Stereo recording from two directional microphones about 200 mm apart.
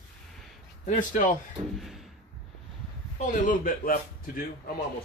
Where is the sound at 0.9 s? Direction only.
40° left (ahead or behind).